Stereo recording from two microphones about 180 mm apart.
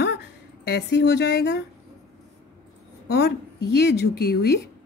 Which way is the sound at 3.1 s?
65° left (ahead or behind).